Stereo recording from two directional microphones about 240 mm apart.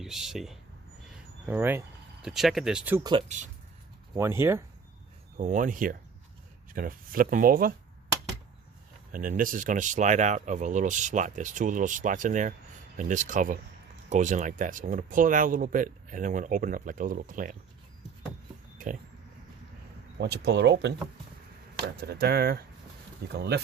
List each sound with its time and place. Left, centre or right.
0.0 s speech: centre
1.1 s a sound: centre
2.2 s speech: centre
3.2 s speech: right
4.2 s speech: centre
5.4 s speech: right
9.1 s speech: right
18.8 s speech: right
20.1 s speech: right
21.9 s speech: right